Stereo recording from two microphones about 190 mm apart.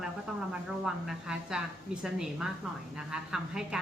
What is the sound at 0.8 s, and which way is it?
A woman's voice, 5° right (ahead or behind).